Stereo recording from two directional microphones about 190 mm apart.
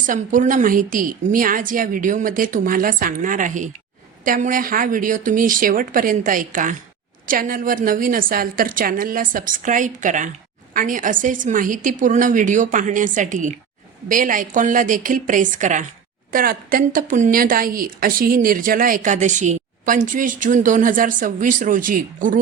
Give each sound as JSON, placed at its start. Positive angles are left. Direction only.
{"t": 0.0, "sound": "a woman's voice", "side_deg": -45}